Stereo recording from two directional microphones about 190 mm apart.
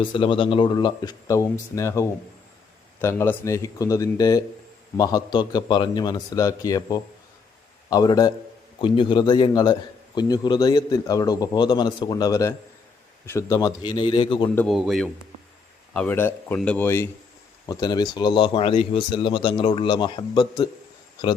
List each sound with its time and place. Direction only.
0.0 s speech: 25° left (ahead or behind)
14.7 s speech: centre (ahead or behind); by 20.7 s 25° left (ahead or behind)